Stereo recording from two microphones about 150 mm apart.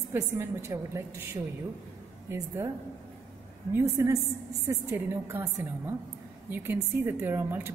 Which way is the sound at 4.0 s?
15° right (ahead or behind).